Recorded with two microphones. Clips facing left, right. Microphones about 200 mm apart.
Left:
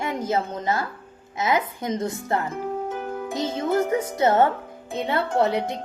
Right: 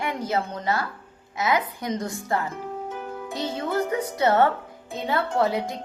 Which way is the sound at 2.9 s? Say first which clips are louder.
Left 4 dB; 55° left (ahead or behind).